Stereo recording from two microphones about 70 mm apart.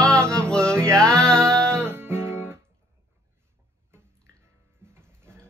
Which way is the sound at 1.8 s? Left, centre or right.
Right.